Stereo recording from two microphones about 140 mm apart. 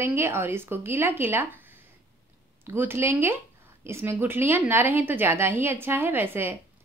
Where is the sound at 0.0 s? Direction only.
15° right (ahead or behind).